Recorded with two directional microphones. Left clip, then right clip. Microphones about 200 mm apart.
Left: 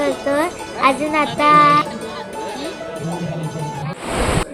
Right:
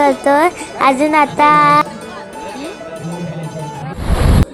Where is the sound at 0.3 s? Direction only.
50° right (ahead or behind).